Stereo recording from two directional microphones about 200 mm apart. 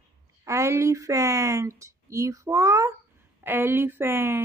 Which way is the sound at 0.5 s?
15° right (ahead or behind).